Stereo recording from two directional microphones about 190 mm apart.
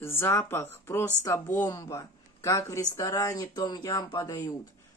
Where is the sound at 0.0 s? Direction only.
15° left (ahead or behind).